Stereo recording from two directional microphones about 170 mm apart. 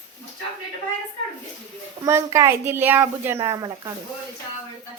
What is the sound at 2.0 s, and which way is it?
Speech, 15° right (ahead or behind).